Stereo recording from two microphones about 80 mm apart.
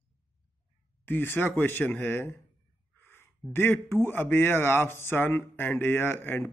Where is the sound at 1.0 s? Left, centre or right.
Left.